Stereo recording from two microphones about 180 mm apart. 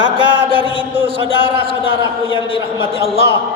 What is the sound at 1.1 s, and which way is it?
Speech, 30° right (ahead or behind).